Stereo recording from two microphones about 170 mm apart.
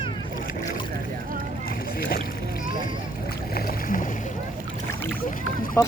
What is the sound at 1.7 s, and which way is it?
Rowboat, 65° left (ahead or behind).